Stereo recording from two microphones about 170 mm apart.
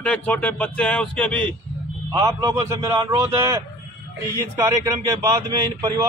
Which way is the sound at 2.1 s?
20° right (ahead or behind).